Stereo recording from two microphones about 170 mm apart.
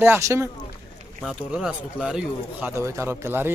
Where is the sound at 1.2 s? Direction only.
5° right (ahead or behind).